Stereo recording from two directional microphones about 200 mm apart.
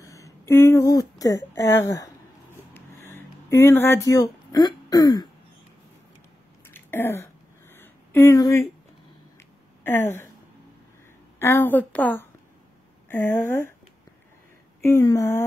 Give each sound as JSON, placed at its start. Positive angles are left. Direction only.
{"t": 0.0, "sound": "speech", "side_deg": 15}
{"t": 2.7, "sound": "a sound", "side_deg": 10}
{"t": 6.7, "sound": "a sound", "side_deg": 10}
{"t": 9.8, "sound": "speech", "side_deg": 15}
{"t": 11.3, "sound": "a woman's voice", "side_deg": 10}
{"t": 14.8, "sound": "a woman's voice", "side_deg": 15}